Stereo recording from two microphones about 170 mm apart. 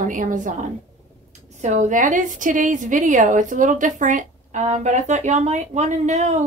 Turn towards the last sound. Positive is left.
turn(degrees=-40)  # may be behind; listen again after turning